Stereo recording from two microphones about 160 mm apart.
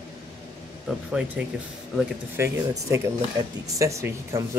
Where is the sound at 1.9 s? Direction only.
15° right (ahead or behind).